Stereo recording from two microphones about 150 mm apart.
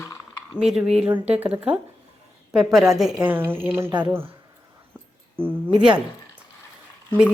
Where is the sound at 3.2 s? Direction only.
15° right (ahead or behind).